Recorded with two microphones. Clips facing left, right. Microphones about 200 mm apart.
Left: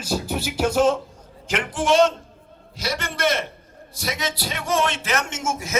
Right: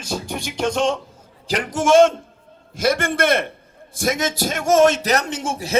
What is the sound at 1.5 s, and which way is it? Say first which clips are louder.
A man's voice: right 4 dB; 40° right (ahead or behind).